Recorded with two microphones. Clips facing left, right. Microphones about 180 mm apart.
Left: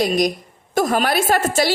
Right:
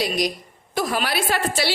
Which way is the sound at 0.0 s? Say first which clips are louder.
Left 5 dB; 50° left (ahead or behind).